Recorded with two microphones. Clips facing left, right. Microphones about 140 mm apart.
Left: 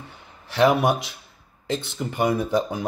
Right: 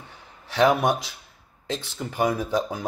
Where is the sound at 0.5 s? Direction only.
Centre (ahead or behind).